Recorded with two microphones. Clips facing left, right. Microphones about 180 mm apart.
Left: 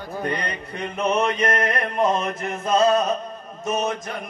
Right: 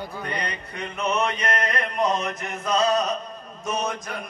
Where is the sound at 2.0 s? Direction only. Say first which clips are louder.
Left 3 dB; 50° left (ahead or behind).